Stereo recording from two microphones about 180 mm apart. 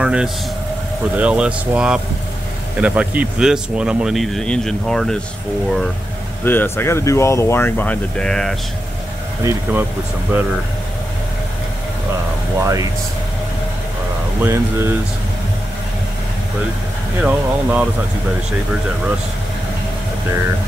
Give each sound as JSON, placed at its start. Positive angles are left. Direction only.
{"t": 0.0, "sound": "vehicle", "side_deg": -5}
{"t": 1.1, "sound": "speech", "side_deg": -5}
{"t": 6.4, "sound": "speech", "side_deg": 10}
{"t": 9.4, "sound": "speech", "side_deg": -15}
{"t": 12.5, "sound": "speech", "side_deg": -20}
{"t": 14.4, "sound": "speech", "side_deg": -15}
{"t": 17.2, "sound": "speech", "side_deg": -10}